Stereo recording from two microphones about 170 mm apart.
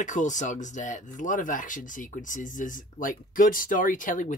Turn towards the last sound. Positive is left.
turn(degrees=50)  # may be behind; listen again after turning